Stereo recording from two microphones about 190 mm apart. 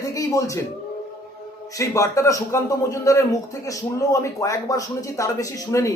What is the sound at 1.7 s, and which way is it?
A man's voice, 15° left (ahead or behind).